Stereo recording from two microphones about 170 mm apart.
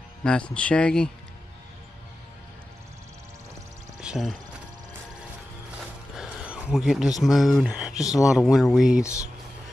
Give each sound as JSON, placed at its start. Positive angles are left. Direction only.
{"t": 0.2, "sound": "speech", "side_deg": 5}
{"t": 4.0, "sound": "speech", "side_deg": -5}
{"t": 6.1, "sound": "a sound", "side_deg": -5}
{"t": 7.2, "sound": "speech", "side_deg": 0}
{"t": 8.0, "sound": "speech", "side_deg": 20}
{"t": 8.3, "sound": "speech", "side_deg": 0}
{"t": 9.0, "sound": "speech", "side_deg": 20}